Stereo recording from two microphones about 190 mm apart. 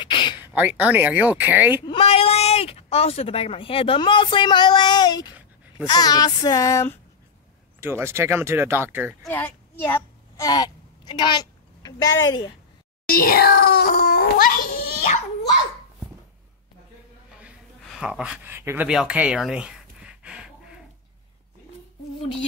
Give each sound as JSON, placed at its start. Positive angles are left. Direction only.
{"t": 0.0, "sound": "a sound", "side_deg": 25}
{"t": 0.4, "sound": "speech", "side_deg": -10}
{"t": 1.8, "sound": "speech", "side_deg": 30}
{"t": 5.9, "sound": "child singing", "side_deg": 20}
{"t": 7.8, "sound": "speech", "side_deg": -15}
{"t": 9.2, "sound": "speech", "side_deg": 10}
{"t": 12.1, "sound": "speech", "side_deg": 90}
{"t": 13.1, "sound": "a child's voice", "side_deg": 50}
{"t": 17.4, "sound": "a sound", "side_deg": -5}